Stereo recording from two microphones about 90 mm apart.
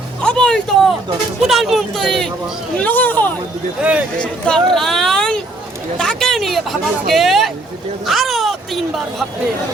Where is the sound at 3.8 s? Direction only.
15° right (ahead or behind).